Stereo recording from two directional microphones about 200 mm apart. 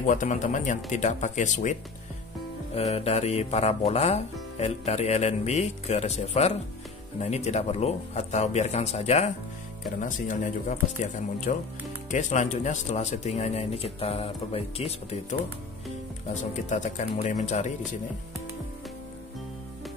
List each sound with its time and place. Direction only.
0.0 s speech: 40° left (ahead or behind)
16.5 s speech: 35° left (ahead or behind)